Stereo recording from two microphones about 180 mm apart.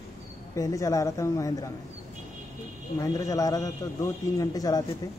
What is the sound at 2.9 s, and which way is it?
A man's voice, 20° left (ahead or behind).